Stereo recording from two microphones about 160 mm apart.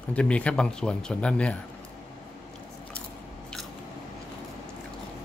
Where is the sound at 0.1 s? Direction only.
10° left (ahead or behind).